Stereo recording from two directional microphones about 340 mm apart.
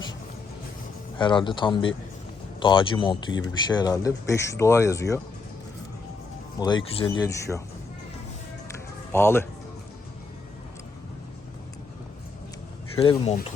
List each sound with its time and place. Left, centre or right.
1.2 s speech: centre
6.6 s speech: centre
9.1 s speech: centre
13.0 s speech: centre